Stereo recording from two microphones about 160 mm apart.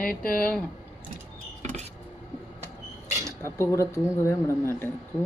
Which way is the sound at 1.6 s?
45° right (ahead or behind).